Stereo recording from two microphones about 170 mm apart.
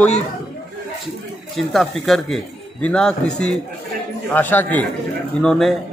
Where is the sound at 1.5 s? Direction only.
Centre (ahead or behind).